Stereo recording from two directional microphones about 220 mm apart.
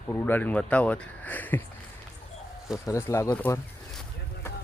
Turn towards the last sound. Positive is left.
turn(degrees=10)  # may be behind; listen again after turning